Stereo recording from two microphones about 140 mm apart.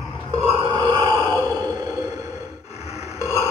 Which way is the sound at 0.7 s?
30° right (ahead or behind).